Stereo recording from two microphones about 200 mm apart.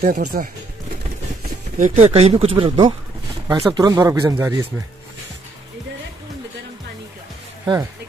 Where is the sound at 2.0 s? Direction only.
30° right (ahead or behind).